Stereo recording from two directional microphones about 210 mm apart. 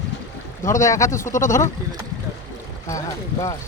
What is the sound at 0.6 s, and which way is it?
Speech, 15° left (ahead or behind).